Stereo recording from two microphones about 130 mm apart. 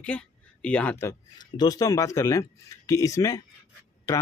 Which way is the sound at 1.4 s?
30° left (ahead or behind).